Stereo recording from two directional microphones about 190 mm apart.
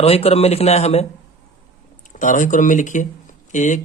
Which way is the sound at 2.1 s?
40° left (ahead or behind).